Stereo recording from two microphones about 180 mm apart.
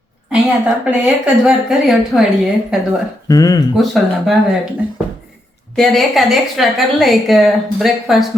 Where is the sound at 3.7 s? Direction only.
Centre (ahead or behind).